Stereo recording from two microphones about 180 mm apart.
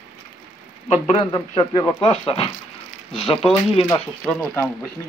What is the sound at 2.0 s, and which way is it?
Speech, 30° left (ahead or behind).